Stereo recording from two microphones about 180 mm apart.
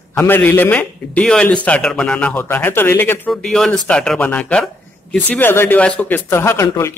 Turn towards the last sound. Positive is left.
turn(degrees=15)  # may be behind; listen again after turning